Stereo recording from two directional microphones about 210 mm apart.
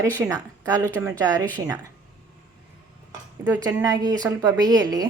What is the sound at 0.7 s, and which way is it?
Speech, 10° right (ahead or behind).